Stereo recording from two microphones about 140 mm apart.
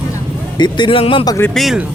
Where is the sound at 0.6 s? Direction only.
35° left (ahead or behind).